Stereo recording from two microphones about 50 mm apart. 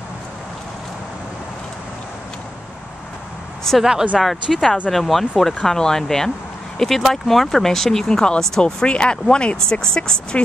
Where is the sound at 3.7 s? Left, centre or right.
Centre.